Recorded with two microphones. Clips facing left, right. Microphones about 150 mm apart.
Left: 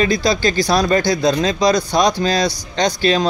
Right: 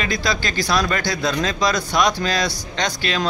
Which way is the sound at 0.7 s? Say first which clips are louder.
Left 4 dB; 35° left (ahead or behind).